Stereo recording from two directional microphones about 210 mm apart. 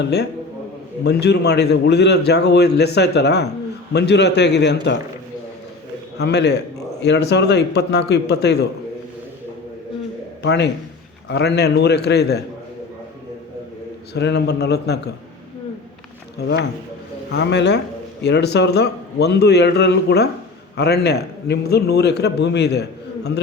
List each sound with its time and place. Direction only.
0.0 s a man's voice: 55° left (ahead or behind)
6.1 s a man's voice: 55° left (ahead or behind)
10.4 s a man's voice: 55° left (ahead or behind)
14.1 s a man's voice: 55° left (ahead or behind)
16.4 s a man's voice: 50° left (ahead or behind)